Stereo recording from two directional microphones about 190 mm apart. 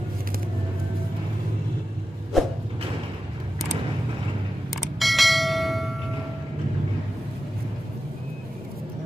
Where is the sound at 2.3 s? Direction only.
Centre (ahead or behind).